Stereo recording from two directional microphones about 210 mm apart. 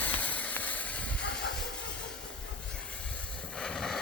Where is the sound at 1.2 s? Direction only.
50° left (ahead or behind).